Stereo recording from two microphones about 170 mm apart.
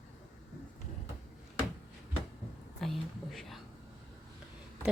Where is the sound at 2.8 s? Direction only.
Centre (ahead or behind).